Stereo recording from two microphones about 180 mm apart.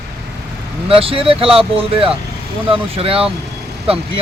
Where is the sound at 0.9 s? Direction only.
30° right (ahead or behind).